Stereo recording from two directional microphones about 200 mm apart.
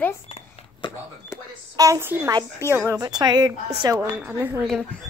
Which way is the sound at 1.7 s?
15° right (ahead or behind).